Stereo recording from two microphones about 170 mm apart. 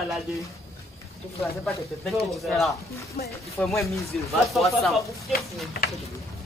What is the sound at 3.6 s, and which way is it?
Speech, 10° left (ahead or behind).